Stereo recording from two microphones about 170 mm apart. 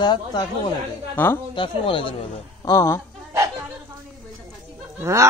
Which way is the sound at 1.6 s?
30° left (ahead or behind).